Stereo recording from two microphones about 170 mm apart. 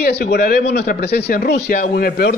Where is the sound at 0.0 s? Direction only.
75° left (ahead or behind).